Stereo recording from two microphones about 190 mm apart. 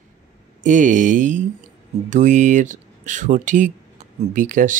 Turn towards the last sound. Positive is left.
turn(degrees=-45)  # may be behind; listen again after turning